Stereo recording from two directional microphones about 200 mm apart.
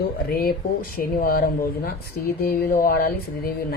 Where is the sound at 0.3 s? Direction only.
50° left (ahead or behind).